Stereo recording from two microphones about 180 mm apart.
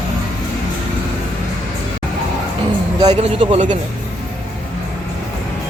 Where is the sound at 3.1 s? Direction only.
35° right (ahead or behind).